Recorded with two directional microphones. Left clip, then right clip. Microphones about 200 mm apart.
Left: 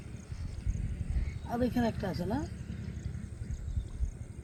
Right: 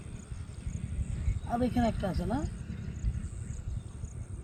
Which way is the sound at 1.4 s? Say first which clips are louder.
Right 2 dB; 20° right (ahead or behind).